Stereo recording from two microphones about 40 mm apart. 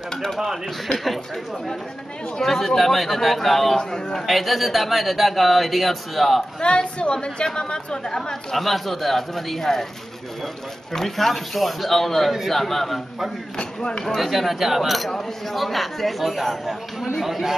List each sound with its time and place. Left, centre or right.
0.1 s speech: centre
4.3 s speech: centre
6.6 s a woman's voice: left
8.2 s speech: centre
15.0 s speech: centre